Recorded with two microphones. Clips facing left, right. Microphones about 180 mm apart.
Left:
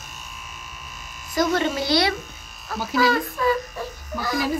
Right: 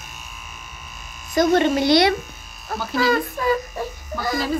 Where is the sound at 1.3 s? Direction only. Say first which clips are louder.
Right 5 dB; 55° right (ahead or behind).